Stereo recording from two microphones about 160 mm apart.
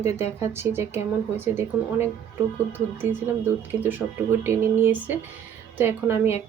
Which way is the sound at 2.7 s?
15° right (ahead or behind).